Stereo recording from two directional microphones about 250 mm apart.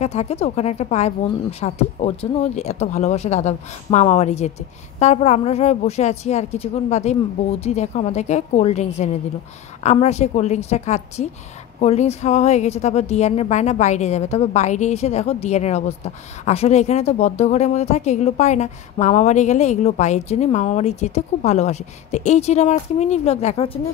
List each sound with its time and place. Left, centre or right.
0.0 s a woman's voice: left